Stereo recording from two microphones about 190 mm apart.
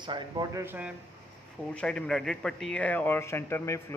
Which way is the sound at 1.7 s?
5° left (ahead or behind).